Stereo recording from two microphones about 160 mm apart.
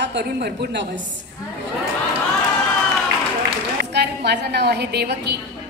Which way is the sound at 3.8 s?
90° right.